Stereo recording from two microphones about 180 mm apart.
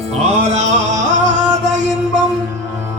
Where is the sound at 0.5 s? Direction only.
40° right (ahead or behind).